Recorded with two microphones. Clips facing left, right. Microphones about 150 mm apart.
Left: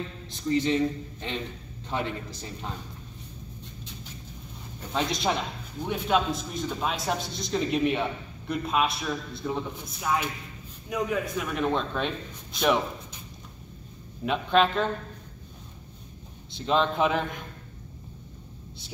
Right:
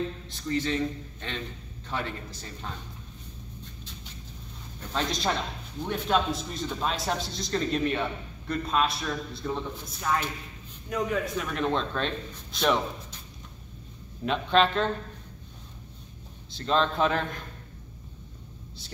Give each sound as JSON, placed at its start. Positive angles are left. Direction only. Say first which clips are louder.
{"t": 0.5, "sound": "a man's voice", "louder": "left 4 dB", "side_deg": 20}
{"t": 4.9, "sound": "a man's voice", "louder": "left 2 dB", "side_deg": 10}
{"t": 14.2, "sound": "a man's voice", "louder": "even", "side_deg": 5}
{"t": 16.6, "sound": "a man's voice", "louder": "left 1 dB", "side_deg": 10}